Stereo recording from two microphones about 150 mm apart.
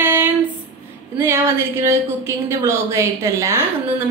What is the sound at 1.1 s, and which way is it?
A woman's voice, 15° right (ahead or behind).